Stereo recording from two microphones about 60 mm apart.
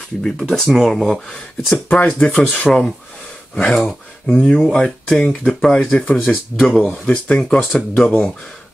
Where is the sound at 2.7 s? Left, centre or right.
Centre.